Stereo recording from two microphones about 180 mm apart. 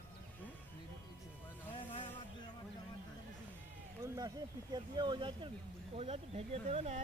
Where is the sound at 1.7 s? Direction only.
30° left (ahead or behind).